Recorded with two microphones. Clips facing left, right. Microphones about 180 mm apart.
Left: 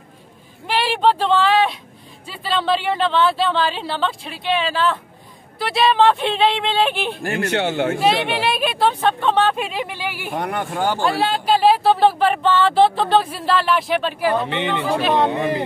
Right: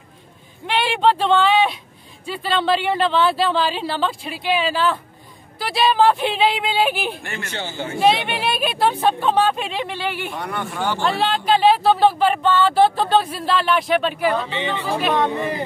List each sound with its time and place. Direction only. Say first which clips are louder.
0.7 s speech: even; centre (ahead or behind)
7.3 s a man's voice: left 9 dB; 65° left (ahead or behind)
8.3 s speech: left 2 dB; centre (ahead or behind)
10.3 s speech: left 4 dB; 50° left (ahead or behind)
11.0 s speech: left 1 dB; 10° left (ahead or behind)
14.4 s a man's voice: left 3 dB; 60° left (ahead or behind)